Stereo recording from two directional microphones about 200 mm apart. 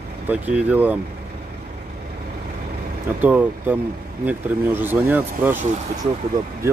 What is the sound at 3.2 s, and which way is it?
Speech, 10° right (ahead or behind).